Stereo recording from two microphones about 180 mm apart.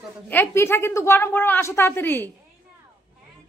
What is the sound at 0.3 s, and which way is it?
A woman's voice, 10° left (ahead or behind).